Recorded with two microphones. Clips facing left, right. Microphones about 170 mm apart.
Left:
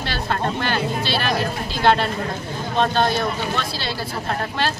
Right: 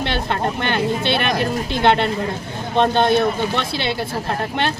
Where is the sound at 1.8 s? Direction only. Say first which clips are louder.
Right 1 dB; 20° right (ahead or behind).